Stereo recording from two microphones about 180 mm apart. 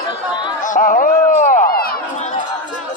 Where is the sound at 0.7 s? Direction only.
50° left (ahead or behind).